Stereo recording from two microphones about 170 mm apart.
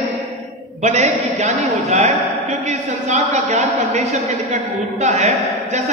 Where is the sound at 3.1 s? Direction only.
45° right (ahead or behind).